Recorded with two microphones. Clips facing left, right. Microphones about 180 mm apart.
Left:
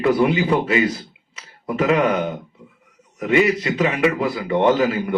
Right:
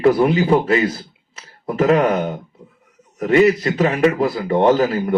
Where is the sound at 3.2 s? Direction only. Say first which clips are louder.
Right 4 dB; 40° right (ahead or behind).